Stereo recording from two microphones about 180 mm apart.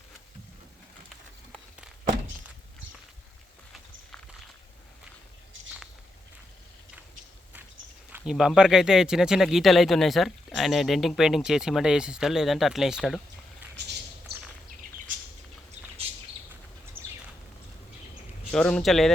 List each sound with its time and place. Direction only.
8.3 s speech: centre (ahead or behind)
13.7 s a sound: 70° right (ahead or behind)
18.5 s speech: 5° left (ahead or behind)